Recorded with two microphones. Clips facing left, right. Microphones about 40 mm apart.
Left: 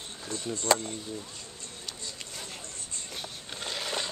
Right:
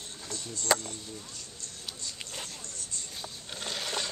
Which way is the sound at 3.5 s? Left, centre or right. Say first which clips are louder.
Left 1 dB; centre.